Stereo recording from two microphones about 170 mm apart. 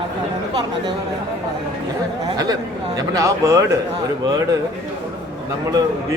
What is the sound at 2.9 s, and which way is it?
Speech, 20° right (ahead or behind).